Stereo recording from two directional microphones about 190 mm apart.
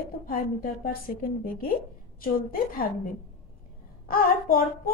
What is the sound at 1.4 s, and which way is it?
A woman's voice, 50° left (ahead or behind).